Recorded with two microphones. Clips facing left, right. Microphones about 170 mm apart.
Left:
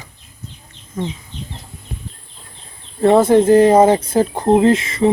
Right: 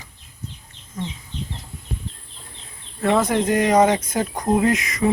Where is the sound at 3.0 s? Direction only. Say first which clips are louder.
Left 8 dB; 30° left (ahead or behind).